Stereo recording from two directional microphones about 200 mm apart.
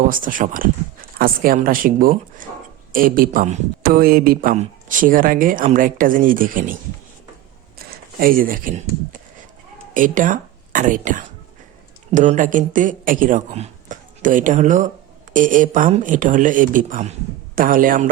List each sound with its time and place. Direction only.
0.1 s speech: 40° right (ahead or behind)
7.9 s speech: 45° right (ahead or behind)
9.9 s speech: 40° right (ahead or behind)